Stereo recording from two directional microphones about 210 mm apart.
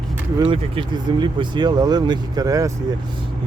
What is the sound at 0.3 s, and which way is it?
Speech, 25° right (ahead or behind).